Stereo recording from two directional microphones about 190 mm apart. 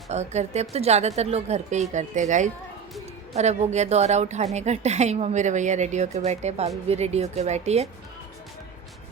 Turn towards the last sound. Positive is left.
turn(degrees=-35)  # may be behind; listen again after turning